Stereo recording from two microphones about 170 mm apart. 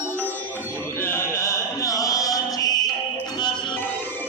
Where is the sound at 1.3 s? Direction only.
20° left (ahead or behind).